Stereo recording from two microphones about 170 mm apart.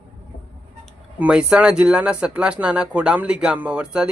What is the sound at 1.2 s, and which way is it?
Speech, 5° right (ahead or behind).